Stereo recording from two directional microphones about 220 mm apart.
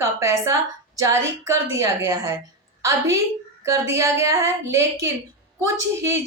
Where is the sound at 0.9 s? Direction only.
15° right (ahead or behind).